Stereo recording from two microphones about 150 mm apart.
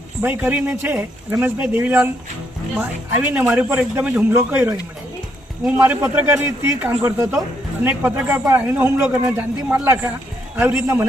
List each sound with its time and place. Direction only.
0.2 s a man's voice: 10° right (ahead or behind)
3.1 s a man's voice: 10° right (ahead or behind)
5.7 s a man's voice: 15° right (ahead or behind)